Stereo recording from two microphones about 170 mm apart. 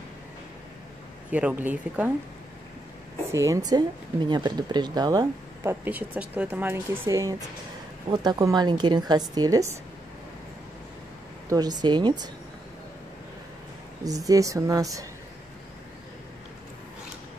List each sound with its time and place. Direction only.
1.3 s speech: 10° right (ahead or behind)
3.3 s speech: 20° right (ahead or behind)
11.4 s speech: 25° right (ahead or behind)
14.0 s speech: 20° right (ahead or behind)